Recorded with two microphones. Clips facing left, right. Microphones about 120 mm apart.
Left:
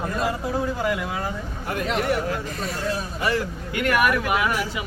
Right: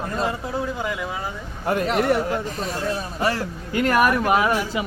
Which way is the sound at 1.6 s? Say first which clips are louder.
Right 4 dB; 35° right (ahead or behind).